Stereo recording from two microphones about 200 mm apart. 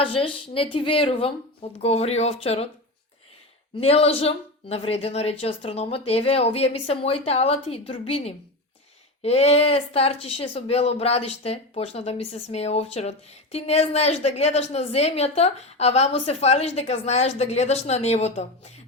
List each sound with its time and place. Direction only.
0.0 s speech: 25° left (ahead or behind)
3.8 s speech: 30° left (ahead or behind)